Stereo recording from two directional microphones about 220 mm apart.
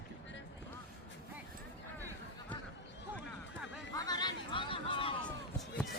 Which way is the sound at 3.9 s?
15° left (ahead or behind).